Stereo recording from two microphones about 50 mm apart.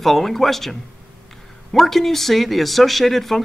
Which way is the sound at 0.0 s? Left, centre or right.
Centre.